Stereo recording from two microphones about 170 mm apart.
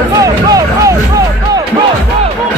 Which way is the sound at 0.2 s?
20° right (ahead or behind).